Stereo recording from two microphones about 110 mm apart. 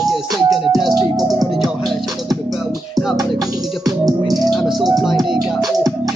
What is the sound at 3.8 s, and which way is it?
Music, 35° right (ahead or behind).